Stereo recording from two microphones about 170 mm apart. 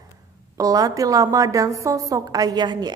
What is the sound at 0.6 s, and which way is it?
A woman's voice, 20° right (ahead or behind).